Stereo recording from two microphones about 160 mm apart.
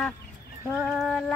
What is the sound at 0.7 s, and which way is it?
Speech, 5° right (ahead or behind).